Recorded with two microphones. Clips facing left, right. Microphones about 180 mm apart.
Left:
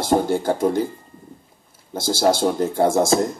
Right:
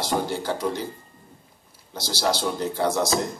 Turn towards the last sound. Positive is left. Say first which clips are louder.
# left 6 dB
turn(degrees=50)  # may be behind; listen again after turning